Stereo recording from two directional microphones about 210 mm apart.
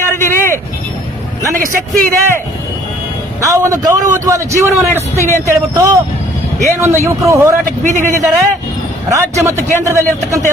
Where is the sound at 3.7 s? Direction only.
15° right (ahead or behind).